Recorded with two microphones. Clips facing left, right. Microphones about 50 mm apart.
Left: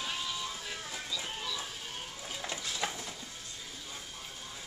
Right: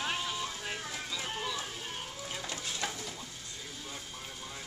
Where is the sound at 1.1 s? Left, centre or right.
Right.